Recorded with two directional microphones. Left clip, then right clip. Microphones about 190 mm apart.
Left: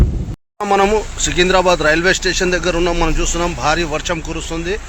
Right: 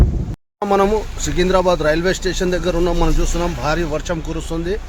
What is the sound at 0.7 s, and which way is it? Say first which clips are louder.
Speech: left 2 dB; 10° right (ahead or behind).